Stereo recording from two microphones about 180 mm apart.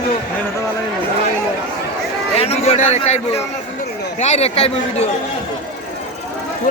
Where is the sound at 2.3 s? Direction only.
35° left (ahead or behind).